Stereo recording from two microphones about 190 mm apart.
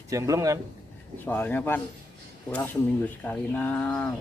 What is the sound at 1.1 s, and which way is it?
Speech, 10° left (ahead or behind).